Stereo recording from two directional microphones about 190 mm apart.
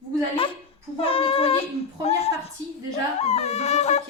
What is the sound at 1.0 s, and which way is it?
Child singing, 30° left (ahead or behind).